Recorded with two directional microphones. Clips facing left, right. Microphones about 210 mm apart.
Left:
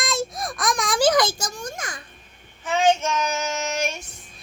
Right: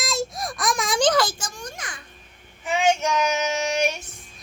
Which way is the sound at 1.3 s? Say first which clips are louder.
Left 4 dB; 40° left (ahead or behind).